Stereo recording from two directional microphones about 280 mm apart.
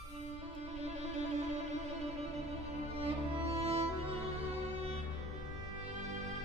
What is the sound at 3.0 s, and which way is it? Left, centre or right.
Music, right.